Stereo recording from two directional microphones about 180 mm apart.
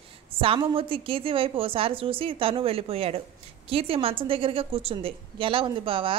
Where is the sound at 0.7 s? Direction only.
30° right (ahead or behind).